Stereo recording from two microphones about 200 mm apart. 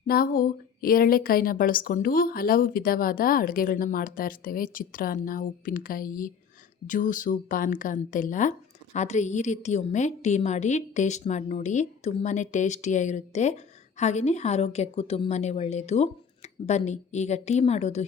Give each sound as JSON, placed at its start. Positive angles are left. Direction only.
{"t": 0.1, "sound": "a woman's voice", "side_deg": 45}